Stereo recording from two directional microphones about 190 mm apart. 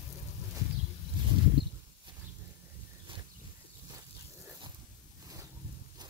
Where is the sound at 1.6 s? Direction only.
60° right (ahead or behind).